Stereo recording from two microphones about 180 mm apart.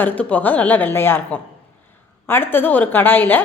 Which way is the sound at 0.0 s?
10° left (ahead or behind).